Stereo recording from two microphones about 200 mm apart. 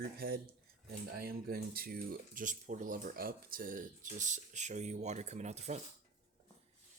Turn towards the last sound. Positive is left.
turn(degrees=-35)  # may be behind; listen again after turning